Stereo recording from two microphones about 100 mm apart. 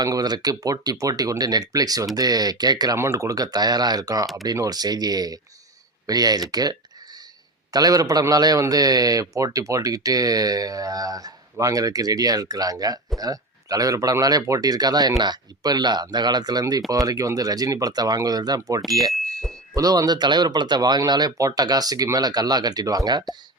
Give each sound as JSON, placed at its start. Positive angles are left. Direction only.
{"t": 0.0, "sound": "a man's voice", "side_deg": -40}
{"t": 3.0, "sound": "a man's voice", "side_deg": -30}
{"t": 19.1, "sound": "bicycle bell", "side_deg": 0}
{"t": 19.7, "sound": "a man's voice", "side_deg": -35}